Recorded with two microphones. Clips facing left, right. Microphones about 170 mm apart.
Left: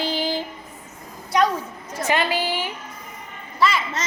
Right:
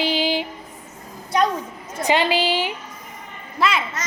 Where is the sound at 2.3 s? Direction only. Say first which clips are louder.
Right 4 dB; 80° right.